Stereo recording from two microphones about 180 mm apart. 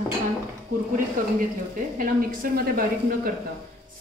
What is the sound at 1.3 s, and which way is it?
A woman's voice, 50° right (ahead or behind).